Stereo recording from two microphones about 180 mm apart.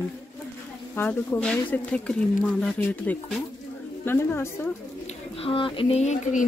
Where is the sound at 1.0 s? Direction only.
5° left (ahead or behind).